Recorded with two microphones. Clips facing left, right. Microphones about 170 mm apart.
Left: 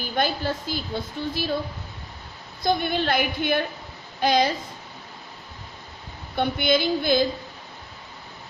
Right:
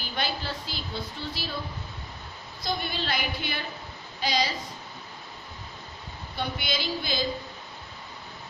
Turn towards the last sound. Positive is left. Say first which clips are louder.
# left 10 dB
turn(degrees=55)  # may be behind; listen again after turning